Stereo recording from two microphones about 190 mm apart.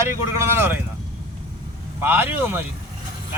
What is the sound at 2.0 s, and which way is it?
Speech, 10° right (ahead or behind).